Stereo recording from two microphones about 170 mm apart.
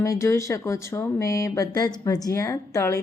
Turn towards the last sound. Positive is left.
turn(degrees=20)  # may be behind; listen again after turning